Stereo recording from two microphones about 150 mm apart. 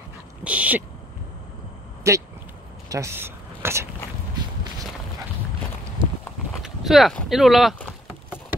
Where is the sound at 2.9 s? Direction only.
20° right (ahead or behind).